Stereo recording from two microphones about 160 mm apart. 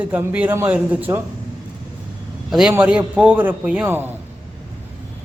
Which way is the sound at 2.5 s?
5° right (ahead or behind).